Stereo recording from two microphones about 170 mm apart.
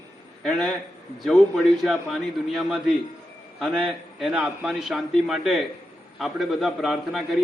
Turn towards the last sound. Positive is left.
turn(degrees=0)  # may be behind; listen again after turning